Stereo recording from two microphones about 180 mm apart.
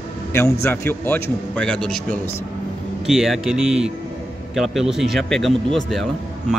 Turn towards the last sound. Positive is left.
turn(degrees=0)  # may be behind; listen again after turning